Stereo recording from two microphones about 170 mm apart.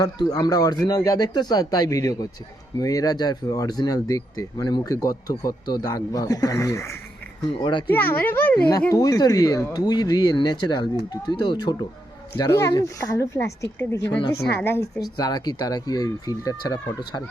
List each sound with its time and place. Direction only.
0.0 s speech: 20° left (ahead or behind)
7.9 s speech: 10° left (ahead or behind)